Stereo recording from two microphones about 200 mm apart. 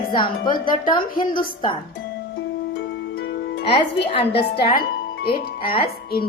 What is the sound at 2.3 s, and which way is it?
Music, 55° left (ahead or behind).